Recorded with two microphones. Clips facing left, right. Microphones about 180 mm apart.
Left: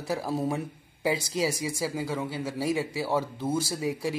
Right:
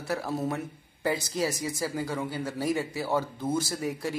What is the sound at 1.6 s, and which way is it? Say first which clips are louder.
Speech: left 1 dB; 10° left (ahead or behind).